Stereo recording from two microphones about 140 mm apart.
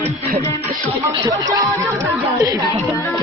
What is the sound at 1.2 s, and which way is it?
Speech, 25° right (ahead or behind).